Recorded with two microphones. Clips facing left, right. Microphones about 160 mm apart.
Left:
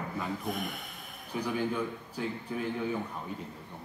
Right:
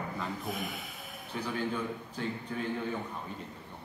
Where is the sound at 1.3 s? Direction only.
10° left (ahead or behind).